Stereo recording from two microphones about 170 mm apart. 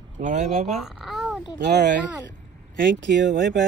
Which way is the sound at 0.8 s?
5° right (ahead or behind).